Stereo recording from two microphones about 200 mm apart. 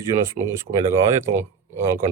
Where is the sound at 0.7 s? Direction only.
40° right (ahead or behind).